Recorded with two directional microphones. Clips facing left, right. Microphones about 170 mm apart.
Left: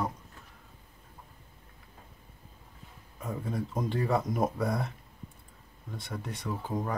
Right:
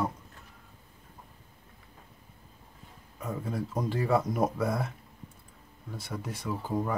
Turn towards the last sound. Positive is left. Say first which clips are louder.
# right 2 dB
turn(degrees=-5)  # may be behind; listen again after turning